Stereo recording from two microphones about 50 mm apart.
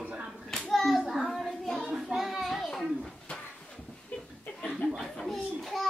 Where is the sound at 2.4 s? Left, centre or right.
Centre.